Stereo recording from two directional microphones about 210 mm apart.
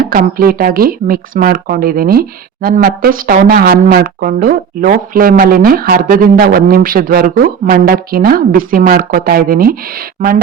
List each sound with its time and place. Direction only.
0.0 s speech: 45° right (ahead or behind)